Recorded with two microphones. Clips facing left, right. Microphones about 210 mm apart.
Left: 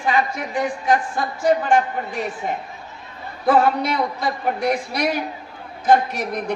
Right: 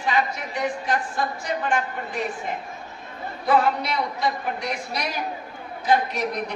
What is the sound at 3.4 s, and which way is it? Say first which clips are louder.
Speech: left 4 dB; 50° left (ahead or behind).